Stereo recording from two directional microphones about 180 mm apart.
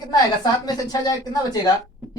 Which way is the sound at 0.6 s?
20° left (ahead or behind).